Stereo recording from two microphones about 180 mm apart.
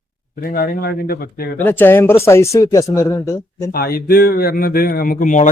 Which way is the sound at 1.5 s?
10° left (ahead or behind).